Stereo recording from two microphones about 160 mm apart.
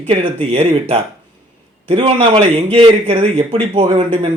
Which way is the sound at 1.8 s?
35° right (ahead or behind).